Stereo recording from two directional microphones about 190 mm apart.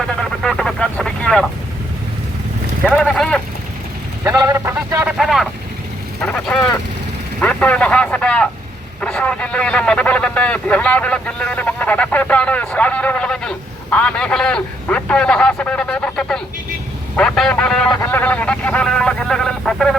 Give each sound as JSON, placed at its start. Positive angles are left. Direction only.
{"t": 0.4, "sound": "speech", "side_deg": 5}
{"t": 2.9, "sound": "a man's voice", "side_deg": 5}
{"t": 4.4, "sound": "speech", "side_deg": -15}
{"t": 5.1, "sound": "a man's voice", "side_deg": 0}